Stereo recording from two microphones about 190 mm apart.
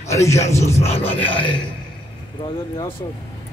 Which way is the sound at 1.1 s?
10° left (ahead or behind).